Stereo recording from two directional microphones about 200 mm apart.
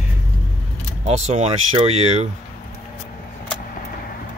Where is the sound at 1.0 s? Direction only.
35° right (ahead or behind).